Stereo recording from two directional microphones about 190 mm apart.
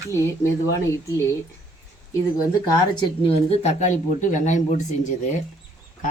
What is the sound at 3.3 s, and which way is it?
Speech, 35° left (ahead or behind).